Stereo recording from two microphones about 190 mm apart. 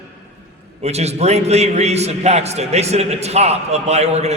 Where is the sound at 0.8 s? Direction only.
35° right (ahead or behind).